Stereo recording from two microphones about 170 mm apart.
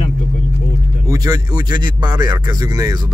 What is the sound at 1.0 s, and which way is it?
Speech, 20° right (ahead or behind).